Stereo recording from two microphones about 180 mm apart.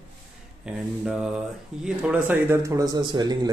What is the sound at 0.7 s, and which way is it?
Speech, 5° right (ahead or behind).